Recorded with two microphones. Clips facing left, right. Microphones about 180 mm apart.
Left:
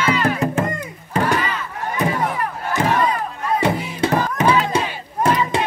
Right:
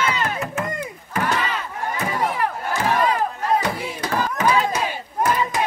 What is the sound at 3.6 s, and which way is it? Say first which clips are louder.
Music: left 5 dB; 25° left (ahead or behind).